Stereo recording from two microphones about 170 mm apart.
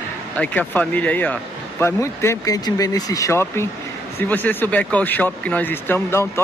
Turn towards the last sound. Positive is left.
turn(degrees=15)  # may be behind; listen again after turning